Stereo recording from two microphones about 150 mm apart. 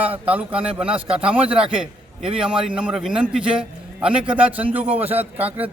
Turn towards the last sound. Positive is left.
turn(degrees=-10)  # may be behind; listen again after turning